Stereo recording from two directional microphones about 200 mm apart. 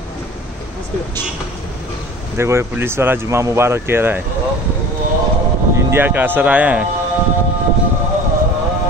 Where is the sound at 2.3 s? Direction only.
15° right (ahead or behind).